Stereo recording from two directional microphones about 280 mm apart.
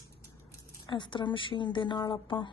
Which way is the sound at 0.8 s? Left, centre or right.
Centre.